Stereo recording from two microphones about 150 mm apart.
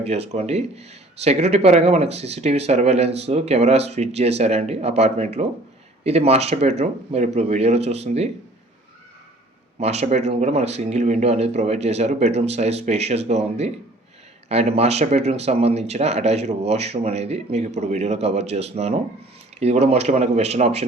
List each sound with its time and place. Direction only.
0.0 s speech: 45° right (ahead or behind)
9.8 s speech: 45° right (ahead or behind)